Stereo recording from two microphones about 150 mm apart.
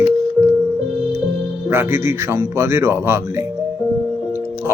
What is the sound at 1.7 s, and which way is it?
Speech, 15° right (ahead or behind).